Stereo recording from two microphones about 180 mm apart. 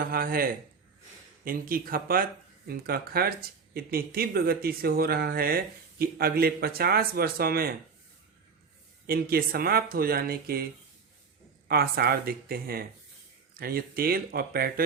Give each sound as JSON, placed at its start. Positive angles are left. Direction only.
{"t": 0.1, "sound": "speech", "side_deg": -55}
{"t": 9.0, "sound": "speech", "side_deg": -55}
{"t": 11.7, "sound": "speech", "side_deg": -60}